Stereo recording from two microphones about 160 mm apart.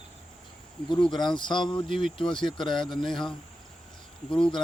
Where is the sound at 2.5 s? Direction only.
Centre (ahead or behind).